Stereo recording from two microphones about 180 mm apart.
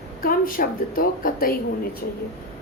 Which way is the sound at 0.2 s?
50° left (ahead or behind).